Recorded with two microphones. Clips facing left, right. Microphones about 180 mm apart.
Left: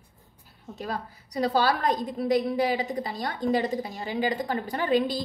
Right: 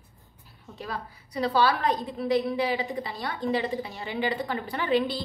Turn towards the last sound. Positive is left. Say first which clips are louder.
# left 1 dB
turn(degrees=40)  # may be behind; listen again after turning